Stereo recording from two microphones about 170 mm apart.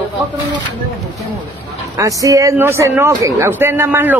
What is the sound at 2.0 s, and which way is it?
A man's voice, 20° right (ahead or behind).